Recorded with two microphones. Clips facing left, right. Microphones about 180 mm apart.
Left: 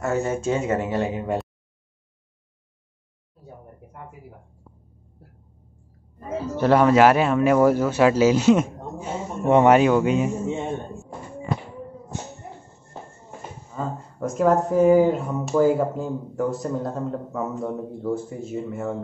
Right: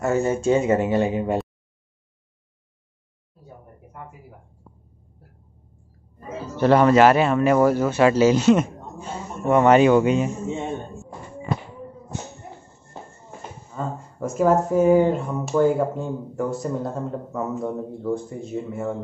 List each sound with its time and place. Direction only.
0.0 s speech: centre (ahead or behind)
1.2 s a sound: 5° right (ahead or behind)
6.6 s speech: 5° left (ahead or behind)
9.0 s a sound: 20° left (ahead or behind)
9.8 s speech: centre (ahead or behind)
13.7 s speech: centre (ahead or behind)